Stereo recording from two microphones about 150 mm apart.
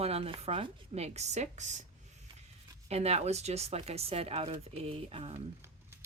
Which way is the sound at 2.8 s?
45° right (ahead or behind).